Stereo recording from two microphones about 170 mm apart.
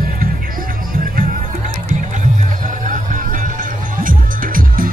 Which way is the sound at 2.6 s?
45° right (ahead or behind).